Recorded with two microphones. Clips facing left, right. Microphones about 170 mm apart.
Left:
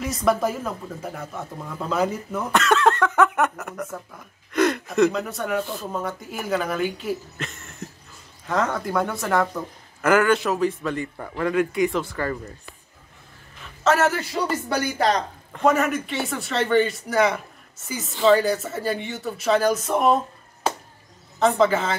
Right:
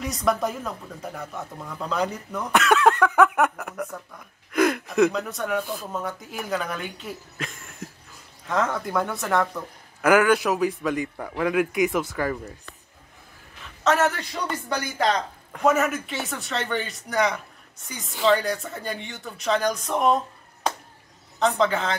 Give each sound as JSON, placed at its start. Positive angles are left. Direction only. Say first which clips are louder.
{"t": 0.0, "sound": "speech", "louder": "left 3 dB", "side_deg": 0}
{"t": 2.5, "sound": "speech", "louder": "even", "side_deg": -10}
{"t": 10.0, "sound": "a man's voice", "louder": "even", "side_deg": -10}
{"t": 13.8, "sound": "speech", "louder": "left 2 dB", "side_deg": 0}
{"t": 15.0, "sound": "speech", "louder": "left 1 dB", "side_deg": 35}
{"t": 15.5, "sound": "speech", "louder": "left 1 dB", "side_deg": -5}
{"t": 21.4, "sound": "speech", "louder": "left 3 dB", "side_deg": 5}